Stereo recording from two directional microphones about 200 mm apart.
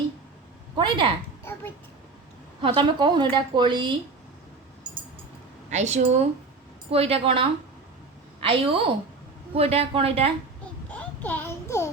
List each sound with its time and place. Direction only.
0.8 s a woman's voice: 25° right (ahead or behind)
2.6 s a woman's voice: 25° right (ahead or behind)
5.7 s a woman's voice: 35° right (ahead or behind)
10.9 s a sound: 10° left (ahead or behind)